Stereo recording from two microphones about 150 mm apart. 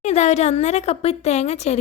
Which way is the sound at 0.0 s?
50° left (ahead or behind).